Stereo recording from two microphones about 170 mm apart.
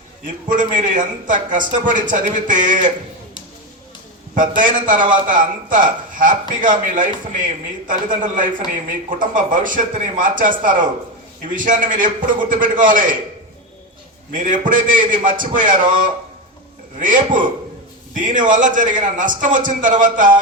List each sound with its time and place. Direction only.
0.4 s a man's voice: 50° right (ahead or behind)
4.4 s a man's voice: 50° right (ahead or behind)
14.3 s a man's voice: 50° right (ahead or behind)
17.0 s a man's voice: 50° right (ahead or behind)